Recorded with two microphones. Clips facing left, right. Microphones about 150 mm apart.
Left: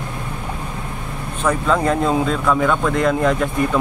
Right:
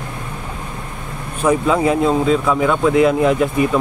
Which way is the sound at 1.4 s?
10° right (ahead or behind).